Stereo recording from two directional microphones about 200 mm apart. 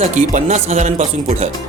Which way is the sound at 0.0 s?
35° right (ahead or behind).